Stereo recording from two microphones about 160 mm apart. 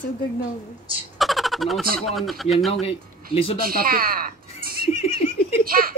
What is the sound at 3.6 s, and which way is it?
Speech, 65° right (ahead or behind).